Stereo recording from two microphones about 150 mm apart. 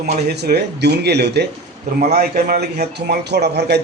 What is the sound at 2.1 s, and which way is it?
A man's voice, 75° right (ahead or behind).